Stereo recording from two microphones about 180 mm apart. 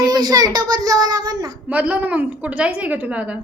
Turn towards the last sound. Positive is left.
turn(degrees=-5)  # may be behind; listen again after turning